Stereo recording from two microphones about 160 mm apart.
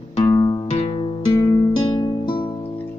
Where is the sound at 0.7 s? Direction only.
35° left (ahead or behind).